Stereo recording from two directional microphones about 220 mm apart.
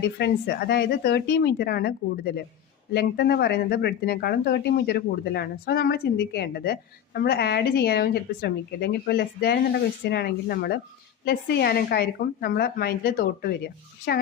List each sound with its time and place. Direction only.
0.2 s speech: 45° left (ahead or behind)